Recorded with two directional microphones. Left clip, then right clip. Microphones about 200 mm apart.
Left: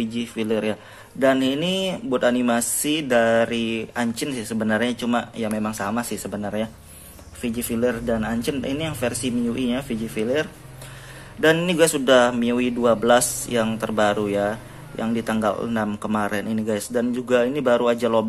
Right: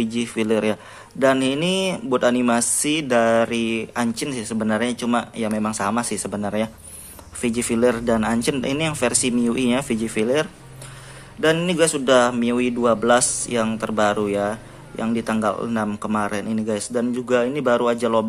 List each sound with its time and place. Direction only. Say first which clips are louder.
0.0 s speech: right 3 dB; 15° right (ahead or behind)
11.4 s a man's voice: left 1 dB; centre (ahead or behind)